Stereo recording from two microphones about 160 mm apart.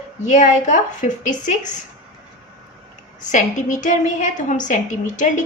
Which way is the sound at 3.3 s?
50° left (ahead or behind).